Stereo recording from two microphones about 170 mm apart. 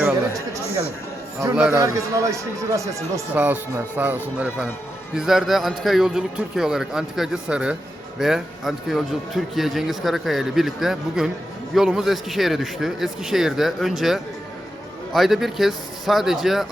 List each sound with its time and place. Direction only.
1.7 s a man's voice: 20° right (ahead or behind); by 16.6 s centre (ahead or behind)